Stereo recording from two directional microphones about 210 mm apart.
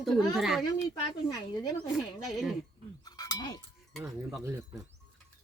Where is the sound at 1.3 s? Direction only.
15° left (ahead or behind).